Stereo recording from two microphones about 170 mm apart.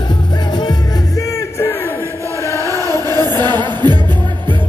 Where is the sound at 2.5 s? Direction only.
20° right (ahead or behind).